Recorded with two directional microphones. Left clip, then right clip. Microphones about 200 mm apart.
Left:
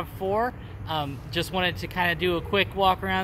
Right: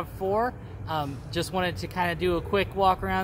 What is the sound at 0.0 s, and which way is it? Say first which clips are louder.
Speech: even; 5° left (ahead or behind).